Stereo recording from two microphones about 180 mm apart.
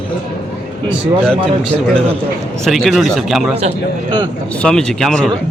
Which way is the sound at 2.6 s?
Centre (ahead or behind).